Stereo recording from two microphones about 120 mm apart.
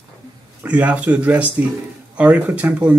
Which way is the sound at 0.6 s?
10° right (ahead or behind).